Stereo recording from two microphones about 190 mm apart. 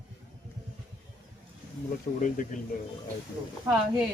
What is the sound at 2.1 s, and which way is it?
Speech, 40° left (ahead or behind).